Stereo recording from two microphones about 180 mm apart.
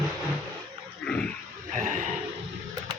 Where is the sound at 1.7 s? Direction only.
45° right (ahead or behind).